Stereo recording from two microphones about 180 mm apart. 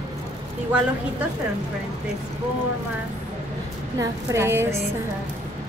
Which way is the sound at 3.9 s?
15° right (ahead or behind).